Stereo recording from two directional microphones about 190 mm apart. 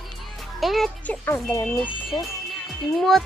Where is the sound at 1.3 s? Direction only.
15° left (ahead or behind).